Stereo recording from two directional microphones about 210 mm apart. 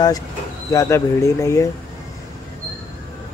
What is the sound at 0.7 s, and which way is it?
Speech, 15° left (ahead or behind).